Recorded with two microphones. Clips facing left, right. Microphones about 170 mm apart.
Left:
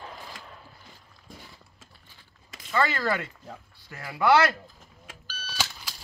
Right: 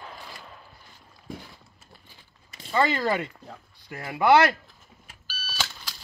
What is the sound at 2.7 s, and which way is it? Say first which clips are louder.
Speech: right 2 dB; 15° right (ahead or behind).